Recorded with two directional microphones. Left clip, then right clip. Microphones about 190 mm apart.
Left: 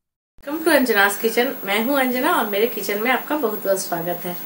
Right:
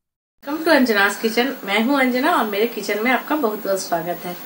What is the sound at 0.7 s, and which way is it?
Speech, 5° left (ahead or behind).